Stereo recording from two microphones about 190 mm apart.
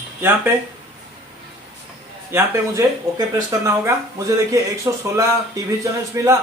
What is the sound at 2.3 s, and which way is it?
Speech, 15° right (ahead or behind).